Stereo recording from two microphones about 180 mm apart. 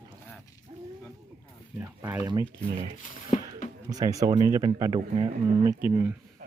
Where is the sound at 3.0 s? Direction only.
45° left (ahead or behind).